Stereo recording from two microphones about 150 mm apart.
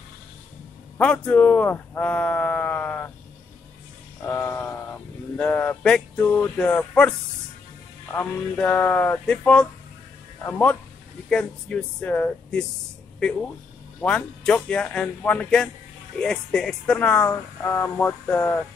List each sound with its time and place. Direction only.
0.9 s speech: 5° left (ahead or behind)
4.2 s a sound: 15° left (ahead or behind)
5.4 s speech: 10° left (ahead or behind)
8.2 s speech: 10° left (ahead or behind)
14.0 s speech: 5° left (ahead or behind)